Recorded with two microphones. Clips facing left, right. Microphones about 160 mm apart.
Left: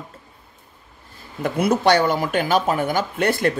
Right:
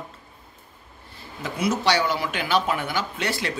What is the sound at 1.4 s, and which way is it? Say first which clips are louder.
A man's voice: left 6 dB; 55° left (ahead or behind).